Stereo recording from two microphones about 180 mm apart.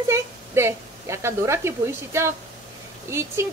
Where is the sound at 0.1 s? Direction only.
15° right (ahead or behind).